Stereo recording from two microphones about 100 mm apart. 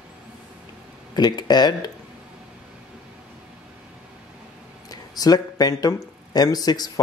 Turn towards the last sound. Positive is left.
turn(degrees=40)  # may be behind; listen again after turning